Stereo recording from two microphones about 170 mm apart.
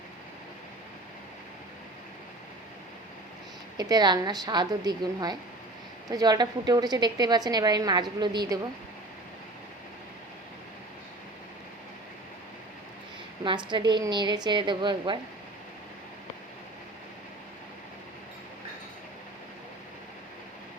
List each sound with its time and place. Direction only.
3.8 s a woman's voice: 25° right (ahead or behind)
13.4 s a woman's voice: 30° right (ahead or behind)